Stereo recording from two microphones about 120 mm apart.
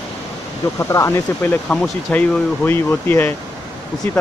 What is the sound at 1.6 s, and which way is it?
Speech, 10° left (ahead or behind).